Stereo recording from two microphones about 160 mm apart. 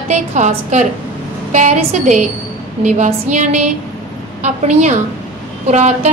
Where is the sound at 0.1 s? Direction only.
45° right (ahead or behind).